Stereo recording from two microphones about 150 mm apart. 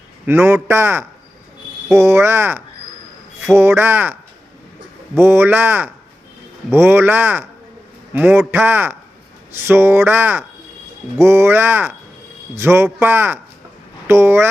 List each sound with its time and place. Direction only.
0.3 s speech: 15° right (ahead or behind)